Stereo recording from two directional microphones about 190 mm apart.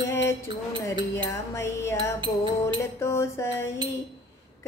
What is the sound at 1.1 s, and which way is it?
Female singing, 15° left (ahead or behind).